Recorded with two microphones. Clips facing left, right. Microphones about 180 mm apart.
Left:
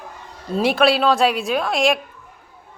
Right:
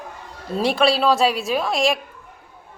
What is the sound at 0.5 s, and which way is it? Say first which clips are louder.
A woman's voice: left 2 dB; centre (ahead or behind).